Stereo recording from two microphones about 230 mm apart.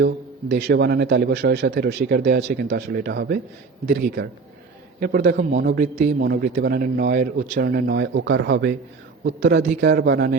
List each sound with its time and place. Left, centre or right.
0.0 s a man's voice: right